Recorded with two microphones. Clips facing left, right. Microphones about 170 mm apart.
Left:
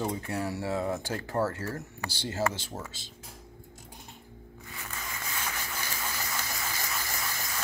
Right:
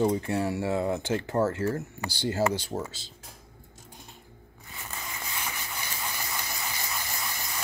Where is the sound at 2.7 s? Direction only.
25° right (ahead or behind).